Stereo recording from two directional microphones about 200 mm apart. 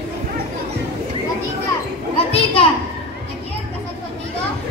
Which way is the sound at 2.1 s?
30° left (ahead or behind).